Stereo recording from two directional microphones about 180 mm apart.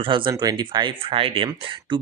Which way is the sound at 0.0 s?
25° right (ahead or behind).